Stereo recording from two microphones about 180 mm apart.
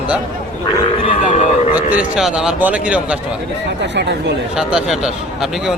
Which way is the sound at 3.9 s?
70° right (ahead or behind).